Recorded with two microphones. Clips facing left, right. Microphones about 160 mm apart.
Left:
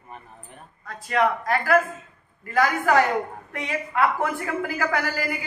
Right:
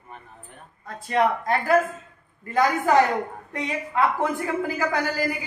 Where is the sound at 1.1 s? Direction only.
25° right (ahead or behind).